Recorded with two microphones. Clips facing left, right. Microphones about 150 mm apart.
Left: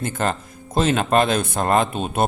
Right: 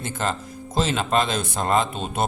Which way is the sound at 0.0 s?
55° left (ahead or behind).